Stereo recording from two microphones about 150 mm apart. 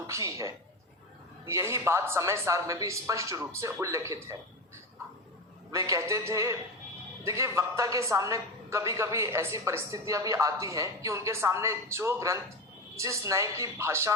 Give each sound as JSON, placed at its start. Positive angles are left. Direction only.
{"t": 0.1, "sound": "a woman's voice", "side_deg": -20}
{"t": 5.7, "sound": "a woman's voice", "side_deg": -20}